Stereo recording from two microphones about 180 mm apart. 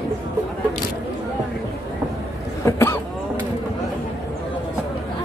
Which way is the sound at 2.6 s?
15° left (ahead or behind).